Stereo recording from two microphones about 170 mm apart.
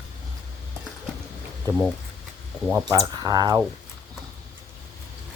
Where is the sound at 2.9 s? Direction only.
25° right (ahead or behind).